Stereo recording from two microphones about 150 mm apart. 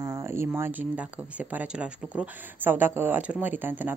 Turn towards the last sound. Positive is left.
turn(degrees=-10)  # may be behind; listen again after turning